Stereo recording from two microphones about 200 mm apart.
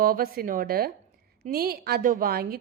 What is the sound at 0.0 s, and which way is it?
Speech, 45° right (ahead or behind).